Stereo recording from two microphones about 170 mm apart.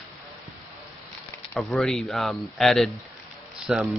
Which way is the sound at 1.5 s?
Centre (ahead or behind).